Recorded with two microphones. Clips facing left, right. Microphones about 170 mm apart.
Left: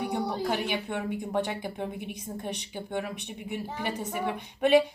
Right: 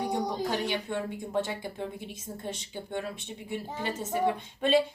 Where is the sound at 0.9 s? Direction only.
55° left (ahead or behind).